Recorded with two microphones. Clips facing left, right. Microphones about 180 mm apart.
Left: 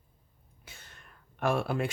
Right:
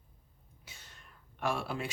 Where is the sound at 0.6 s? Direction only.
55° left (ahead or behind).